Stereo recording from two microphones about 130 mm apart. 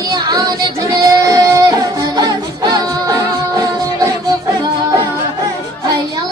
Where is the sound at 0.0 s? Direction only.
30° right (ahead or behind).